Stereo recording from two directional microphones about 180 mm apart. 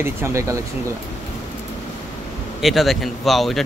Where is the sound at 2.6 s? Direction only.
Centre (ahead or behind).